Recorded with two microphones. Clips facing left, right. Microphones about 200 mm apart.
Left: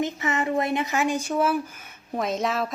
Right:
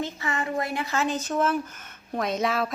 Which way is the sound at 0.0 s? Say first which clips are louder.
Left 4 dB; 20° left (ahead or behind).